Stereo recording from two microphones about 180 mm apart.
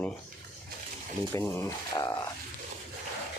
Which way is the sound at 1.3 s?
15° left (ahead or behind).